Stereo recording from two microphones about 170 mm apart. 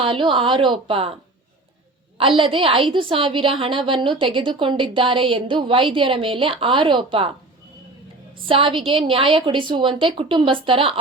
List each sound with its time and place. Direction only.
0.0 s a woman's voice: 30° right (ahead or behind)
8.4 s a woman's voice: 30° right (ahead or behind)